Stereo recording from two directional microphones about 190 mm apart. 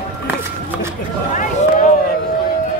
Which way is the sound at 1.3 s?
45° left (ahead or behind).